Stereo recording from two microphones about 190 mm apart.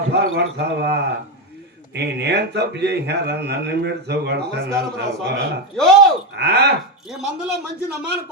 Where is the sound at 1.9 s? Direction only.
60° right (ahead or behind).